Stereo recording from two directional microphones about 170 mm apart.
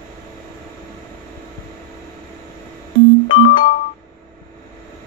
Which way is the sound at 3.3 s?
30° left (ahead or behind).